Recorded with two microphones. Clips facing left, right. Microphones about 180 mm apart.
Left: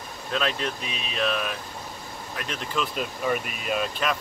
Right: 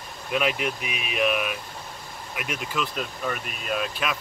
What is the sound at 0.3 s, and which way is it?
Speech, 15° right (ahead or behind).